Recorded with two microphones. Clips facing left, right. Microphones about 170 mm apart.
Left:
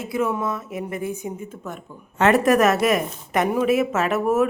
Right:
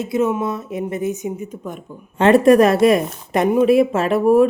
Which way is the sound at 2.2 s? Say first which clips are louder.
Right 5 dB; 25° right (ahead or behind).